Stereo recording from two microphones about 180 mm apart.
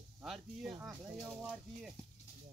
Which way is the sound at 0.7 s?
5° right (ahead or behind).